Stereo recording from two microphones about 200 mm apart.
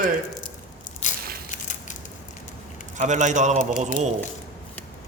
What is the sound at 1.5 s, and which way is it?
Crushing, 40° left (ahead or behind).